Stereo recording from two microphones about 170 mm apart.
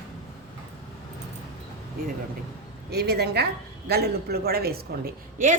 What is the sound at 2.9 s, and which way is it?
A woman's voice, 70° right (ahead or behind).